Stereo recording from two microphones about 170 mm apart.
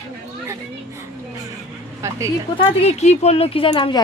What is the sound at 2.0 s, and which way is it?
Speech, 15° right (ahead or behind).